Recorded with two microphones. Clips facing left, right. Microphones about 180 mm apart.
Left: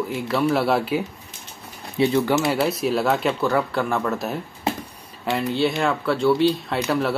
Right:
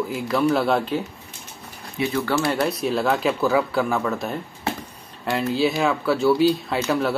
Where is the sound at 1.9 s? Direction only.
30° left (ahead or behind).